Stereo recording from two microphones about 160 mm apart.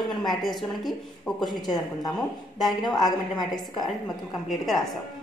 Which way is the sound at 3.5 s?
Centre (ahead or behind).